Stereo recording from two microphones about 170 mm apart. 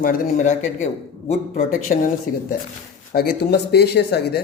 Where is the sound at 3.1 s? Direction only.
65° left (ahead or behind).